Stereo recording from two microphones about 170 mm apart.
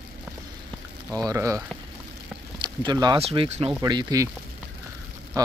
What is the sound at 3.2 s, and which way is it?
Speech, 40° right (ahead or behind).